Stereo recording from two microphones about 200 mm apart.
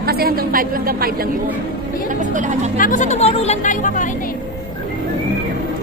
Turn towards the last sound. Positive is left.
turn(degrees=40)  # may be behind; listen again after turning